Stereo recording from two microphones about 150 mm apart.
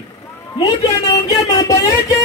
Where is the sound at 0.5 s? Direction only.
25° left (ahead or behind).